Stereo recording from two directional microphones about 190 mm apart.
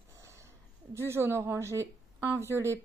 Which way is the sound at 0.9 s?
15° right (ahead or behind).